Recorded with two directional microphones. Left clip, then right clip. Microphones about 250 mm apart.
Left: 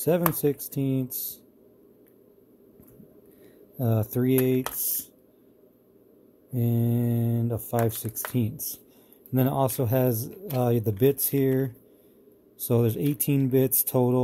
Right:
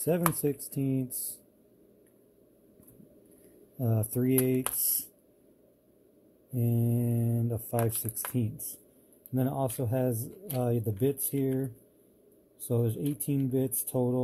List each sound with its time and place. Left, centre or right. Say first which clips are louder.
0.0 s speech: left 5 dB; centre
3.7 s speech: left 5 dB; centre
6.5 s speech: left 4 dB; centre